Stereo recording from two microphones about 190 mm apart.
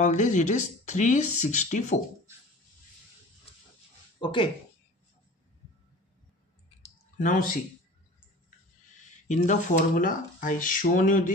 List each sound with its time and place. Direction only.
0.0 s speech: 40° left (ahead or behind)
3.5 s dog: 30° left (ahead or behind)
4.2 s speech: 25° left (ahead or behind)
6.8 s clicking: 40° left (ahead or behind)
9.3 s speech: 40° left (ahead or behind)